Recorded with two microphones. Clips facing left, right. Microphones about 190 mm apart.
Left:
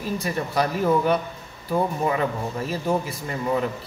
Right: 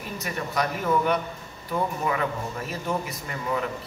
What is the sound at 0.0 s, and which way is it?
A man's voice, 30° left (ahead or behind).